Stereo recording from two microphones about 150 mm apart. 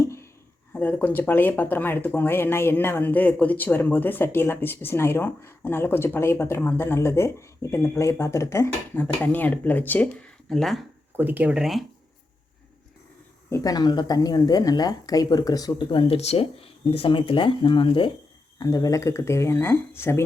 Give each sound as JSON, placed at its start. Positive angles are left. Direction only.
{"t": 0.7, "sound": "speech", "side_deg": 10}
{"t": 11.2, "sound": "speech", "side_deg": -10}
{"t": 13.5, "sound": "speech", "side_deg": 25}
{"t": 18.6, "sound": "speech", "side_deg": 25}